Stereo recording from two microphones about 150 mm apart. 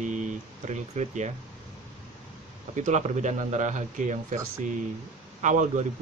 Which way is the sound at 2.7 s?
50° right (ahead or behind).